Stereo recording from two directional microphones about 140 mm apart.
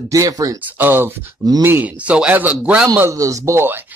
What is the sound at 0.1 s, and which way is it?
Speech, 25° right (ahead or behind).